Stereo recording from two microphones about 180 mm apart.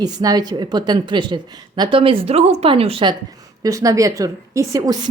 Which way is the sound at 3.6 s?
20° right (ahead or behind).